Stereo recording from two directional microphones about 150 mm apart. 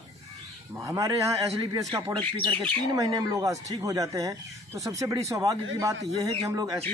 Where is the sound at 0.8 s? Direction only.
20° right (ahead or behind).